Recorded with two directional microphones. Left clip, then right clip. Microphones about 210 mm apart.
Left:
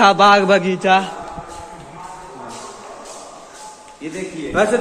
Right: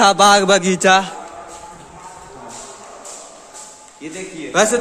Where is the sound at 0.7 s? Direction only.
40° right (ahead or behind).